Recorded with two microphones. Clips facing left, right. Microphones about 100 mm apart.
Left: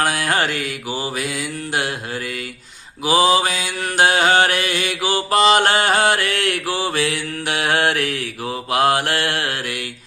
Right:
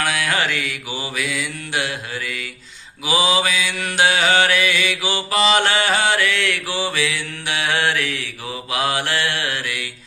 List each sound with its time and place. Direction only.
0.0 s mantra: 40° left (ahead or behind)